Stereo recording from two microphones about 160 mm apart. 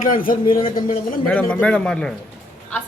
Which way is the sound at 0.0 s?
60° left (ahead or behind).